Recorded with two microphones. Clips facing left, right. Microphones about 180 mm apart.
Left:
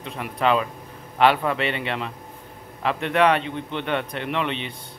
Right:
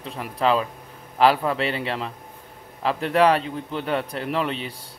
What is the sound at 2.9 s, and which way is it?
A man's voice, 35° right (ahead or behind).